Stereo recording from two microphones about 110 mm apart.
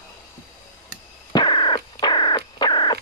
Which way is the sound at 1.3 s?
45° left (ahead or behind).